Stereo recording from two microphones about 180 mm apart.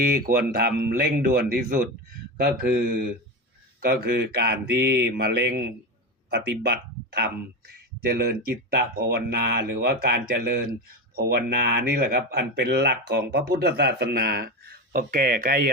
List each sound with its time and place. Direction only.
0.0 s speech: 55° right (ahead or behind)